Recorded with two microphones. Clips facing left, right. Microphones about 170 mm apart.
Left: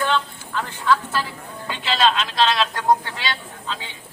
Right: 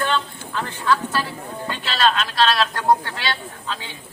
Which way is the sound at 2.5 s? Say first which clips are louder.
Right 1 dB; 20° left (ahead or behind).